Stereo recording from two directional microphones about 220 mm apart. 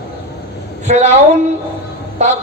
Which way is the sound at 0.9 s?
30° right (ahead or behind).